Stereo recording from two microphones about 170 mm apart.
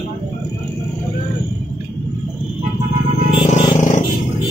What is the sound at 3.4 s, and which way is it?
Vehicle, 45° left (ahead or behind).